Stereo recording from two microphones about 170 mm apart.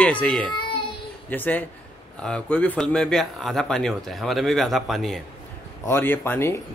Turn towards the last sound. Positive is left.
turn(degrees=15)  # may be behind; listen again after turning